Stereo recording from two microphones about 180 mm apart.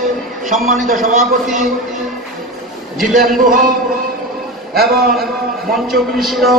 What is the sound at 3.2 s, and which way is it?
Speech, 50° right (ahead or behind).